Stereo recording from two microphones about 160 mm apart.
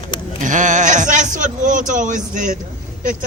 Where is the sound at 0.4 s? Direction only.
50° right (ahead or behind).